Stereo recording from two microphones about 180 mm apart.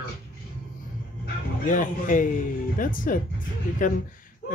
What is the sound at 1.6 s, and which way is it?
Speech, 45° left (ahead or behind).